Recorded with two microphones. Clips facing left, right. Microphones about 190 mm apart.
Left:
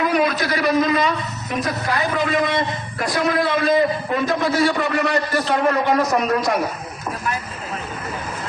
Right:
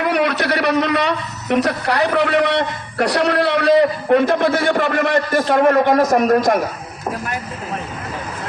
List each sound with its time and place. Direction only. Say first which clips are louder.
0.0 s a man's voice: right 1 dB; 65° right (ahead or behind); by 6.6 s 45° right (ahead or behind)